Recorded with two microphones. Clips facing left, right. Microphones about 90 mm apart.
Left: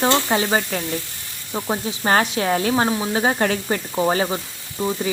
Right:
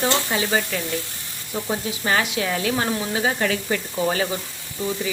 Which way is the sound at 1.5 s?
30° left (ahead or behind).